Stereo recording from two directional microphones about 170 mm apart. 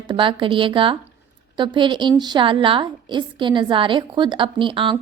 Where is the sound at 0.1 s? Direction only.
30° right (ahead or behind).